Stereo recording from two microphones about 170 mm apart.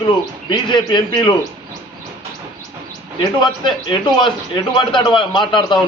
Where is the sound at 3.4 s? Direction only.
25° left (ahead or behind).